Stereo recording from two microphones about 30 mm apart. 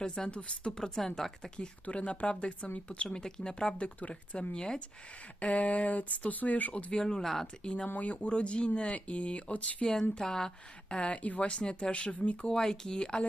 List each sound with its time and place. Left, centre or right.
0.3 s speech: left
0.8 s speech: centre
1.5 s speech: left
3.1 s speech: left
3.8 s speech: left
4.5 s speech: left
5.4 s speech: left
7.2 s speech: centre
7.6 s speech: left
7.9 s speech: left
8.3 s speech: left
9.8 s speech: centre
10.8 s speech: left
12.5 s speech: left